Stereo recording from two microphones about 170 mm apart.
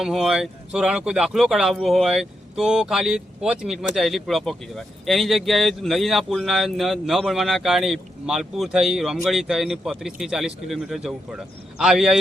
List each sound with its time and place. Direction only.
0.0 s speech: centre (ahead or behind)